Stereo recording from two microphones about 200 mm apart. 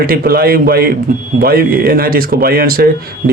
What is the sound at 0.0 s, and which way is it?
Speech, 50° right (ahead or behind).